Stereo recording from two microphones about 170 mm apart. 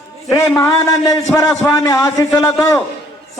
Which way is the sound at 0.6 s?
20° left (ahead or behind).